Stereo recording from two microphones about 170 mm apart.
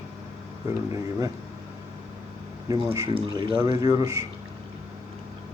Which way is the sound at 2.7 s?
20° right (ahead or behind).